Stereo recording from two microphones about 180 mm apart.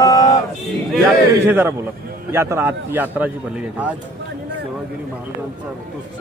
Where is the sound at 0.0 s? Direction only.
20° left (ahead or behind).